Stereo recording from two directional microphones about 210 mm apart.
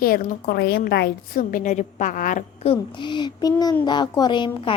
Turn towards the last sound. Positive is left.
turn(degrees=20)  # may be behind; listen again after turning